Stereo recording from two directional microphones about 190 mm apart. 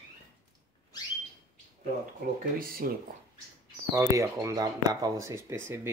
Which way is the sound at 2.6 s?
50° right (ahead or behind).